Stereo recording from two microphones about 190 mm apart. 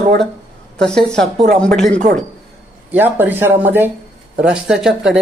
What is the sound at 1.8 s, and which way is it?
Speech, 40° right (ahead or behind).